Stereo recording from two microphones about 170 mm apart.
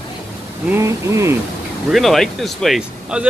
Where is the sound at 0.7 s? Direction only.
15° right (ahead or behind).